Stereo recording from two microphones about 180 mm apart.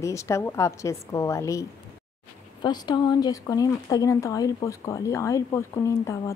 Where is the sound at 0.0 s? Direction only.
15° left (ahead or behind).